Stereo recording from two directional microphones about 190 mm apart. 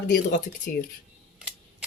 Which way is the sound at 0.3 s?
40° left (ahead or behind).